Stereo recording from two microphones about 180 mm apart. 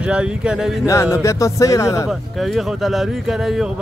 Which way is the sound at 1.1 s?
15° left (ahead or behind).